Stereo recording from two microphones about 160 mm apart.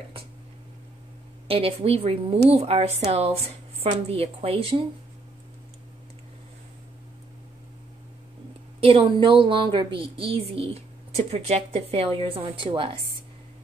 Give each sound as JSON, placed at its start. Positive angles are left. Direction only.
{"t": 1.5, "sound": "a woman's voice", "side_deg": -35}
{"t": 8.8, "sound": "a woman's voice", "side_deg": -35}